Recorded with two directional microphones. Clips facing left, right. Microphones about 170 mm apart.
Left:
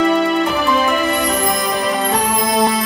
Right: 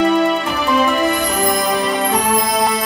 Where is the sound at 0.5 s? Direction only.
Centre (ahead or behind).